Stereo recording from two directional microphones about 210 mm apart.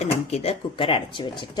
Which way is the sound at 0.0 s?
30° left (ahead or behind).